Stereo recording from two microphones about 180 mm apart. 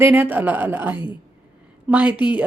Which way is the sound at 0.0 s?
10° right (ahead or behind).